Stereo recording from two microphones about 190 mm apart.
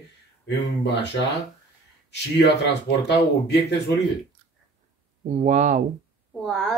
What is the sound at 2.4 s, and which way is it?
Speech, 65° left (ahead or behind).